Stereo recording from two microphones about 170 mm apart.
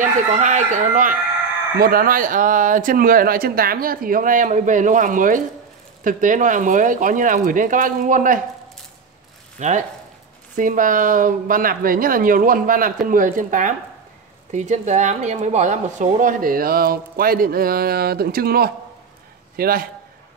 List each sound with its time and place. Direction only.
0.0 s speech: 45° right (ahead or behind)
1.8 s speech: 60° right (ahead or behind)
9.6 s a man's voice: 45° right (ahead or behind); by 19.9 s 60° right (ahead or behind)